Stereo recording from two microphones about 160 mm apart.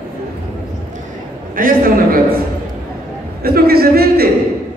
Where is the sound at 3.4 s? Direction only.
70° right (ahead or behind).